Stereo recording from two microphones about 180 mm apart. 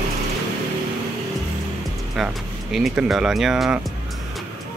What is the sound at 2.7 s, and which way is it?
Speech, centre (ahead or behind).